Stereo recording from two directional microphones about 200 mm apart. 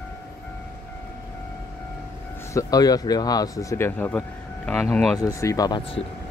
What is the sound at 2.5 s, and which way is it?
Speech, 20° left (ahead or behind).